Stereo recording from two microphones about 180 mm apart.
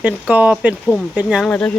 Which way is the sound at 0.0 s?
10° right (ahead or behind).